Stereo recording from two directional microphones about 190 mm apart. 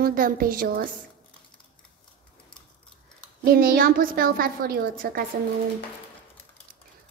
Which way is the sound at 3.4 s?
50° right (ahead or behind).